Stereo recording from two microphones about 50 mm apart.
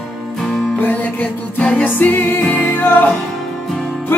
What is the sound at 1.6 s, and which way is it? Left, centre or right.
Music, left.